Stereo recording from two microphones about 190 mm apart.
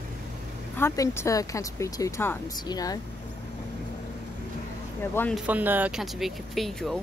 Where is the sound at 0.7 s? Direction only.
15° left (ahead or behind).